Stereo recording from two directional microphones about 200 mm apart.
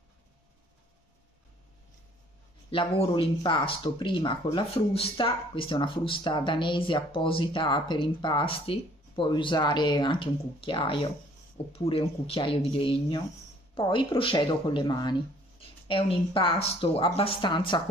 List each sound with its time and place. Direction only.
2.7 s speech: 30° left (ahead or behind)